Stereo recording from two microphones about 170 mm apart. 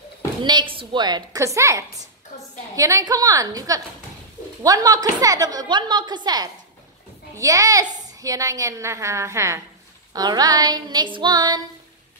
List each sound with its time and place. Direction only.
0.4 s a woman's voice: 25° right (ahead or behind)